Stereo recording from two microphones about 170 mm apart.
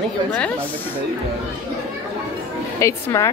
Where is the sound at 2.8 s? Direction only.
15° left (ahead or behind).